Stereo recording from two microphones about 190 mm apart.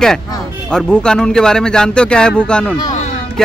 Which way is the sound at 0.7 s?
5° left (ahead or behind).